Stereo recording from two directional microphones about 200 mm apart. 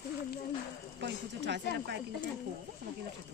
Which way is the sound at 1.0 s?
60° right (ahead or behind).